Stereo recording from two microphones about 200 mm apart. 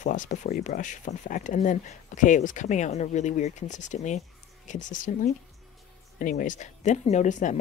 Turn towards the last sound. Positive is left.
turn(degrees=40)  # may be behind; listen again after turning